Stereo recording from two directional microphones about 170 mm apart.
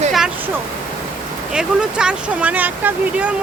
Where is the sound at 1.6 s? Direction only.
5° right (ahead or behind).